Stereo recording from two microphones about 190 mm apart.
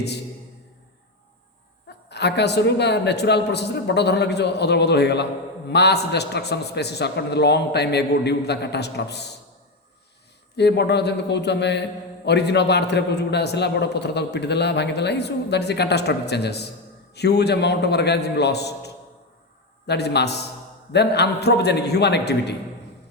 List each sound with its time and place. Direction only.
2.0 s a man's voice: 65° left (ahead or behind)
10.6 s a man's voice: 60° left (ahead or behind)
19.9 s a man's voice: 60° left (ahead or behind)